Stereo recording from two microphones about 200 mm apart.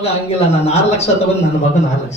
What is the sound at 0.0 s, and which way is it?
A man's voice, 30° left (ahead or behind).